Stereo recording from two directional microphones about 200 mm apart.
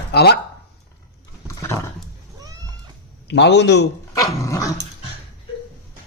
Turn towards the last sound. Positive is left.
turn(degrees=15)  # may be behind; listen again after turning